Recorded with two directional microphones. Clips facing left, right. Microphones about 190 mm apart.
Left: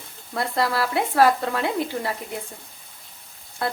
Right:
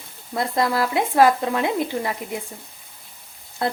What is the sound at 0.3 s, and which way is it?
Speech, 20° right (ahead or behind).